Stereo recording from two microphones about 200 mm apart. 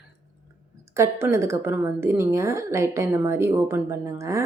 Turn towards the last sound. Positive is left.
turn(degrees=-15)  # may be behind; listen again after turning